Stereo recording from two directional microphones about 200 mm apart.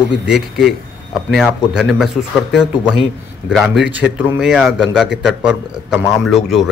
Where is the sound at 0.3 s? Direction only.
Centre (ahead or behind).